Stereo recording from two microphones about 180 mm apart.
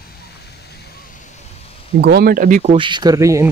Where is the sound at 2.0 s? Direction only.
60° right (ahead or behind); by 2.7 s 45° right (ahead or behind).